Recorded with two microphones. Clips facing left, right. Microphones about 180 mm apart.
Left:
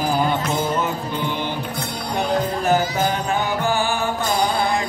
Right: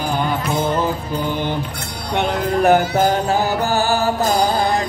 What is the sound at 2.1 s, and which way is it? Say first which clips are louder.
Music: right 3 dB; 70° right (ahead or behind).